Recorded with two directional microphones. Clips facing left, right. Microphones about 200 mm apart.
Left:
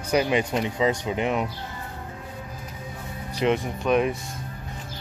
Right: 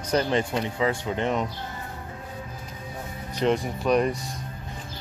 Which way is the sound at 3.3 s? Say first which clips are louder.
Even; 5° left (ahead or behind).